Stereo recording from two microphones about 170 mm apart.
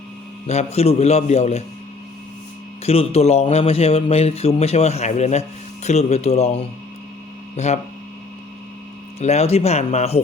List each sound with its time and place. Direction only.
0.4 s speech: 40° left (ahead or behind)
2.8 s speech: 35° left (ahead or behind)
7.5 s hum: 40° left (ahead or behind)
9.2 s speech: 40° left (ahead or behind)